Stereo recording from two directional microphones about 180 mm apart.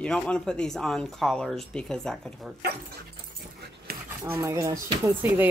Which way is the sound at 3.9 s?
55° right (ahead or behind).